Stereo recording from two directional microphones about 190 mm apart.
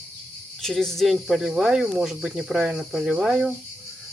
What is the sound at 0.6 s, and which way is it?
Speech, 5° left (ahead or behind).